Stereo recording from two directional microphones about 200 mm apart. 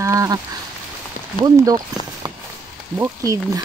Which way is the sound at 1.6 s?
20° right (ahead or behind).